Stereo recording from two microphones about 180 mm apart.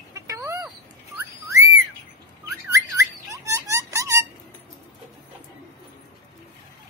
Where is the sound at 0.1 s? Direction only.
20° right (ahead or behind).